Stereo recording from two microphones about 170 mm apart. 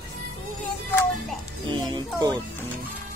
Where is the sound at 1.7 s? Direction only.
25° right (ahead or behind).